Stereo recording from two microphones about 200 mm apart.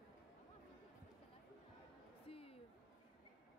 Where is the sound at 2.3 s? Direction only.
30° left (ahead or behind).